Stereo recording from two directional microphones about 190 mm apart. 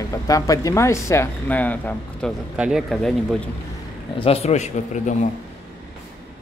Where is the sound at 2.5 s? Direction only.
5° right (ahead or behind).